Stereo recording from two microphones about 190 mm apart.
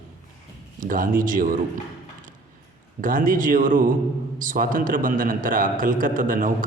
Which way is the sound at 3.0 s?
45° right (ahead or behind).